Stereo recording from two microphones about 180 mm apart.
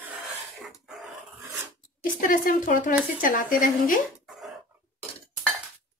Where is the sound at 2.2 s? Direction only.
50° left (ahead or behind).